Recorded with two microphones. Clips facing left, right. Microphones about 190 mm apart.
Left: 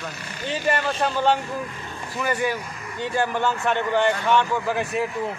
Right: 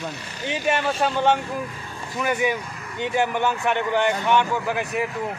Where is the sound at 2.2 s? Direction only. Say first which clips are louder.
Right 1 dB; 10° right (ahead or behind).